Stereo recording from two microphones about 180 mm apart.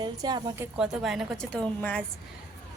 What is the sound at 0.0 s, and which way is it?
Speech, 25° right (ahead or behind).